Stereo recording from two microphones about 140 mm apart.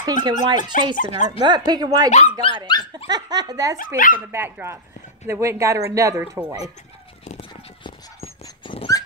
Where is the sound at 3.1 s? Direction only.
30° right (ahead or behind).